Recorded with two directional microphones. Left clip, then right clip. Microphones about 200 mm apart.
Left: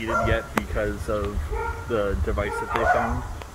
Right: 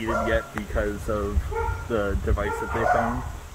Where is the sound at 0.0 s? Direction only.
50° right (ahead or behind).